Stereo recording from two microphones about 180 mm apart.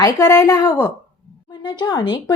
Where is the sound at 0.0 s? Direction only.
20° left (ahead or behind).